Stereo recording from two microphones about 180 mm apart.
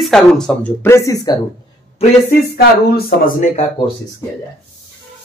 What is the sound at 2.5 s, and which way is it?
Speech, 55° left (ahead or behind).